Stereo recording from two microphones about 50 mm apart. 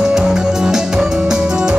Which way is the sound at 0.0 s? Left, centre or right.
Centre.